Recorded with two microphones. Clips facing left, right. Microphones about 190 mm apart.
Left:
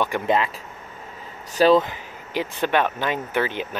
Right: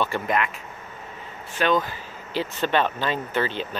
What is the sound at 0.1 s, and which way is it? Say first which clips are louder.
Speech: left 2 dB; 15° left (ahead or behind).